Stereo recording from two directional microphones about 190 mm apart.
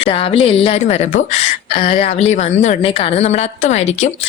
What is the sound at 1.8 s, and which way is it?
A woman's voice, 45° left (ahead or behind).